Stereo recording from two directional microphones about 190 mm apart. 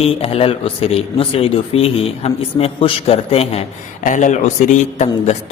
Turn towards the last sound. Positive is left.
turn(degrees=35)  # may be behind; listen again after turning